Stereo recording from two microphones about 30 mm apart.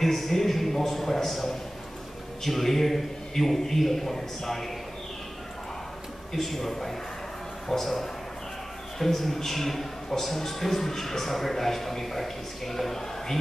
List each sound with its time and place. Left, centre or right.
0.0 s a sound: centre
2.4 s a woman's voice: centre
6.3 s a woman's voice: centre